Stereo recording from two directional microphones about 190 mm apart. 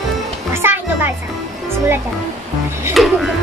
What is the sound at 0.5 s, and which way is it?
Music, 10° right (ahead or behind).